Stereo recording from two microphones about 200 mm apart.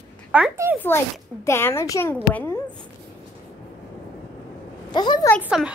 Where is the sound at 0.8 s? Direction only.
10° left (ahead or behind).